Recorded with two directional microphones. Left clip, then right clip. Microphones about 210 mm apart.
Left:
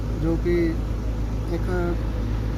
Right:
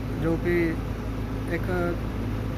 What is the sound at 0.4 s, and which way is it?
Speech, 55° right (ahead or behind).